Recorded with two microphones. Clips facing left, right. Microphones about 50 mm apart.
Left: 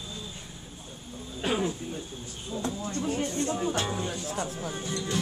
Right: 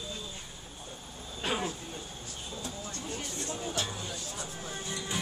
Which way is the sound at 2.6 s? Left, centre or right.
Left.